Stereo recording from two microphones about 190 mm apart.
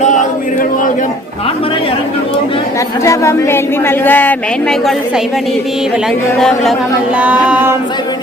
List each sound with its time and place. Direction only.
0.0 s chant: 40° left (ahead or behind)
3.0 s speech: 15° left (ahead or behind)
7.2 s a sound: 5° right (ahead or behind)